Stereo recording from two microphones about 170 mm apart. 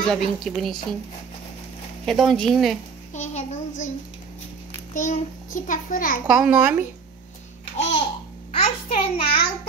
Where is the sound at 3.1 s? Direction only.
45° left (ahead or behind).